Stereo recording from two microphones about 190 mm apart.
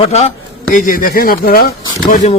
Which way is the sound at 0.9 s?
50° left (ahead or behind).